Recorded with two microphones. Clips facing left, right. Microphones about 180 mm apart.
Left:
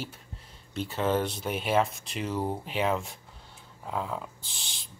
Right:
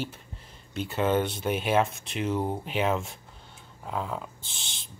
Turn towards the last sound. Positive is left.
turn(degrees=0)  # may be behind; listen again after turning